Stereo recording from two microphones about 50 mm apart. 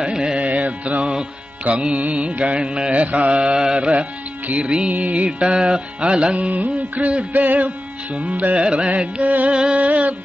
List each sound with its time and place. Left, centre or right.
0.0 s music: centre
0.4 s music: right